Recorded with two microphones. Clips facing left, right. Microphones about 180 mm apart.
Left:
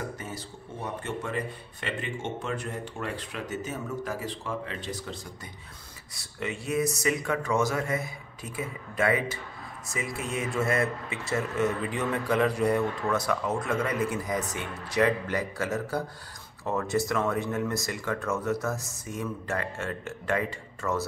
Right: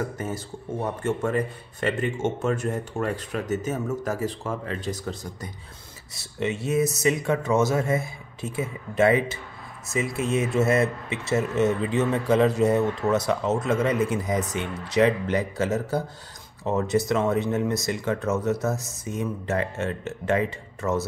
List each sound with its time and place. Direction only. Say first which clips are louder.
1.0 s speech: right 8 dB; 45° right (ahead or behind)
6.1 s speech: right 6 dB; 25° right (ahead or behind)